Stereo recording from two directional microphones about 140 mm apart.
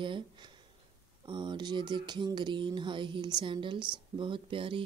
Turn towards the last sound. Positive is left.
turn(degrees=-40)  # may be behind; listen again after turning